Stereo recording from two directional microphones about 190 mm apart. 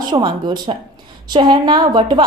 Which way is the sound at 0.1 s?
25° right (ahead or behind).